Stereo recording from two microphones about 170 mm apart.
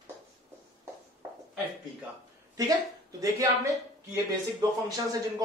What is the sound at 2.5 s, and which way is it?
Speech, 20° right (ahead or behind).